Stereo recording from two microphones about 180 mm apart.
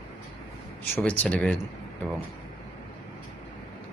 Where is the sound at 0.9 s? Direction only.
10° left (ahead or behind).